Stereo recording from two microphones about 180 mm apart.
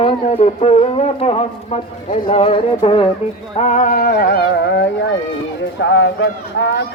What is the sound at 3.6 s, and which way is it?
Speech, 40° left (ahead or behind).